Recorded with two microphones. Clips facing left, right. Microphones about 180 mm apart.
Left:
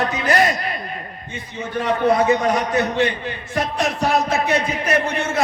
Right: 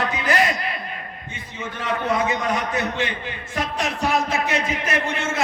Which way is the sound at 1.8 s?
35° left (ahead or behind).